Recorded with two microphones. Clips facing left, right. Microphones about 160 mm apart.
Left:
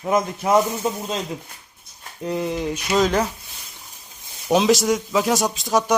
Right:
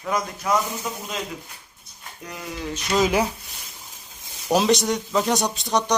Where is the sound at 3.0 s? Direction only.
10° right (ahead or behind).